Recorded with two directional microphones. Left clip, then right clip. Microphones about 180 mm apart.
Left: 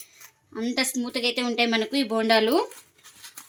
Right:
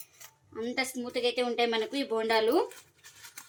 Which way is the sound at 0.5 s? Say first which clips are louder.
Left 6 dB; 50° left (ahead or behind).